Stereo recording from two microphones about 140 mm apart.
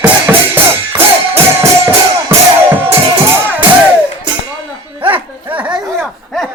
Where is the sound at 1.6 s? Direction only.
20° right (ahead or behind).